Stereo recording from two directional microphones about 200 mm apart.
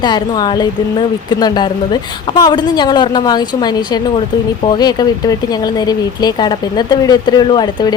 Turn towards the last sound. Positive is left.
turn(degrees=20)  # may be behind; listen again after turning